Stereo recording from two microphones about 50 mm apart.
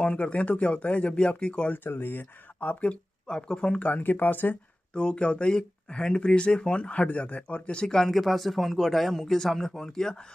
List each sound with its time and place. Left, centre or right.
0.0 s speech: left
1.7 s speech: left
2.6 s speech: left
3.9 s speech: left
4.9 s speech: left